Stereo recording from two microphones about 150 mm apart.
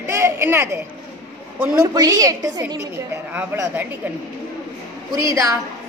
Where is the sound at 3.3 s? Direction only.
10° right (ahead or behind).